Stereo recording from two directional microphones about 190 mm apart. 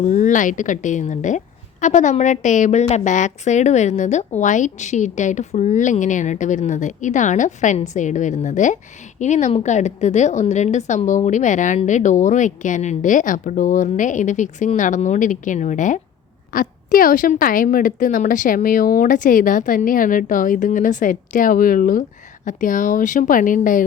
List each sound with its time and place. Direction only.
0.1 s a woman's voice: 40° left (ahead or behind)